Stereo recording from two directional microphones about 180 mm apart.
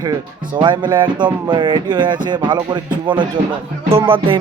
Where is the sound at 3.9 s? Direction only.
30° right (ahead or behind).